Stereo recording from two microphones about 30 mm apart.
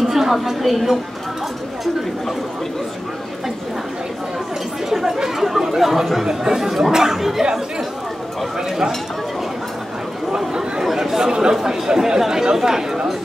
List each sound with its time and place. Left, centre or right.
0.0 s a woman's voice: centre
4.8 s chatter: centre
6.4 s speech: centre
11.0 s speech: centre